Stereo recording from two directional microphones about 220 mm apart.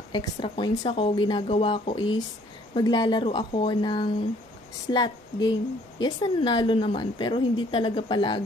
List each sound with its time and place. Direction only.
0.1 s speech: 20° left (ahead or behind)